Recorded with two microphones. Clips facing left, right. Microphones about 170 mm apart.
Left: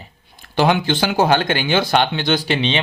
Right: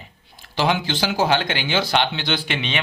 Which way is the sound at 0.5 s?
55° left (ahead or behind).